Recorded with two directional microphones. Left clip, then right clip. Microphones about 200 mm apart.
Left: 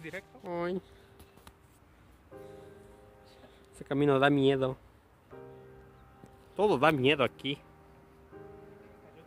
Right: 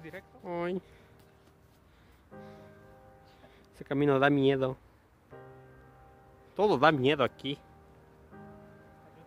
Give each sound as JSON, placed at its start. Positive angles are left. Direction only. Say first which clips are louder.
{"t": 0.5, "sound": "speech", "louder": "even", "side_deg": -20}
{"t": 3.8, "sound": "speech", "louder": "even", "side_deg": -10}
{"t": 6.5, "sound": "speech", "louder": "right 1 dB", "side_deg": -10}